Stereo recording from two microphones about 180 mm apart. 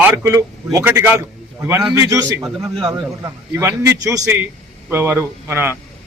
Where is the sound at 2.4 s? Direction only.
Centre (ahead or behind).